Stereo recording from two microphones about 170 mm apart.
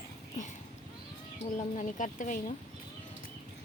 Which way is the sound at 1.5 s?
45° left (ahead or behind).